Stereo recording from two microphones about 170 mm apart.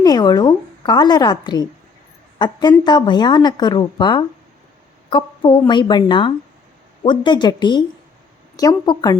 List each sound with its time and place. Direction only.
0.0 s a woman's voice: 25° left (ahead or behind)